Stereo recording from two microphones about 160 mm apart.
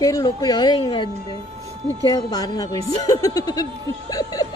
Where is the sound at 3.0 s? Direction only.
20° left (ahead or behind).